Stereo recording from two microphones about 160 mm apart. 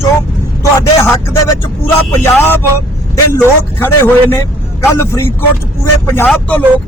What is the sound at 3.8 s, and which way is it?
Speech, 15° left (ahead or behind).